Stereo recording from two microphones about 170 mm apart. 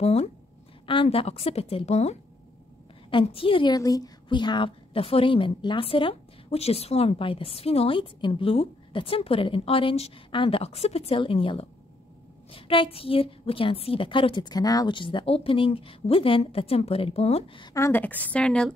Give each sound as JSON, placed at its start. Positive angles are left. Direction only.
{"t": 0.0, "sound": "a woman's voice", "side_deg": 40}
{"t": 17.7, "sound": "a woman's voice", "side_deg": 15}